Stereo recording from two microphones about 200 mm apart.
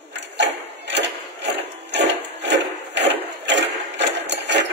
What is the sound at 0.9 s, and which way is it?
Wood, 60° right (ahead or behind).